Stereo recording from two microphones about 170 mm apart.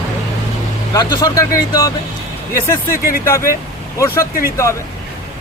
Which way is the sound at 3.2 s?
15° left (ahead or behind).